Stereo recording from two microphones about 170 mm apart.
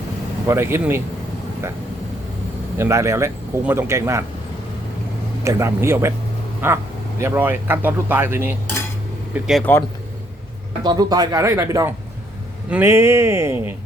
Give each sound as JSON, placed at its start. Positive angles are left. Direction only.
{"t": 0.4, "sound": "speech", "side_deg": -15}
{"t": 2.7, "sound": "speech", "side_deg": -15}
{"t": 5.4, "sound": "speech", "side_deg": -15}
{"t": 9.3, "sound": "speech", "side_deg": 0}
{"t": 10.8, "sound": "speech", "side_deg": -25}